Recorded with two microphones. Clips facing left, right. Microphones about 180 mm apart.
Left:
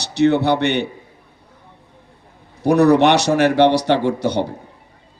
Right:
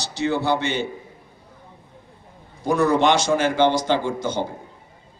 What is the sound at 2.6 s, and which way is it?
A man's voice, 70° left (ahead or behind).